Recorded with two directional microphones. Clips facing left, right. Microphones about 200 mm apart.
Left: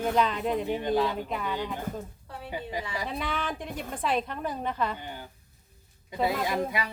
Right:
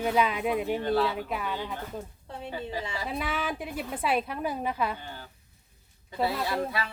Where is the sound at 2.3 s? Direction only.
25° right (ahead or behind).